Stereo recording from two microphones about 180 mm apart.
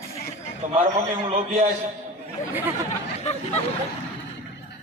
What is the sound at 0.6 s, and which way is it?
Speech, 45° right (ahead or behind).